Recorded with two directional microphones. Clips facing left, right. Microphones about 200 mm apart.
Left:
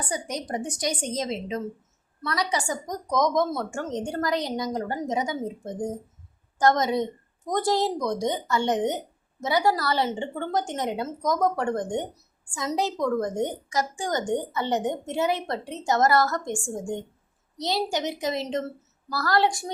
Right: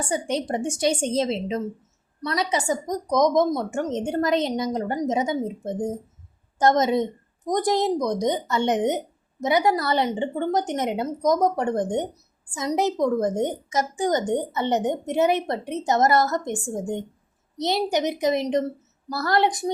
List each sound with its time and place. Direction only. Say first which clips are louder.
0.0 s a woman's voice: right 6 dB; 30° right (ahead or behind)